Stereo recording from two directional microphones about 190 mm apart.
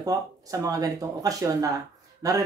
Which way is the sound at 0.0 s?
20° right (ahead or behind).